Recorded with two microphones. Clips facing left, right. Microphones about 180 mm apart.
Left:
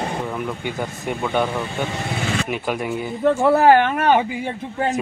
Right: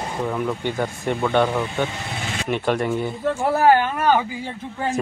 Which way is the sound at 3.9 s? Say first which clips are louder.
Left 2 dB; 20° left (ahead or behind).